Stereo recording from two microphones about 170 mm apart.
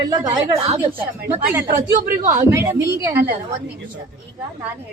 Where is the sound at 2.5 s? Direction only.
15° right (ahead or behind).